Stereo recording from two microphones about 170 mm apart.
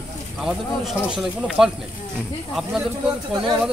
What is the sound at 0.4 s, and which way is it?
Speech, 5° right (ahead or behind).